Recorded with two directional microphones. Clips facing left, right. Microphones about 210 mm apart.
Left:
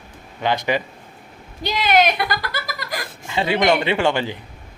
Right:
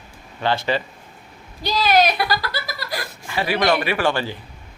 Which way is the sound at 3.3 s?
20° left (ahead or behind).